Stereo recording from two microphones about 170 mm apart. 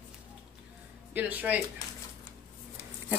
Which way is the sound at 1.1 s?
10° right (ahead or behind).